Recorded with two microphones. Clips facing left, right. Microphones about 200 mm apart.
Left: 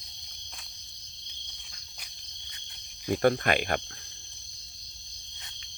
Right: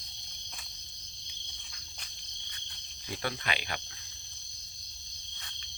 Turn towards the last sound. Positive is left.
turn(degrees=50)  # may be behind; listen again after turning